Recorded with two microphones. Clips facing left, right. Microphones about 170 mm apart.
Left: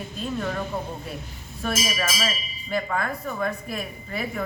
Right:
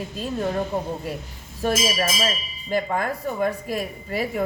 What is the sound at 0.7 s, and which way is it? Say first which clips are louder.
Speech: right 4 dB; 40° right (ahead or behind).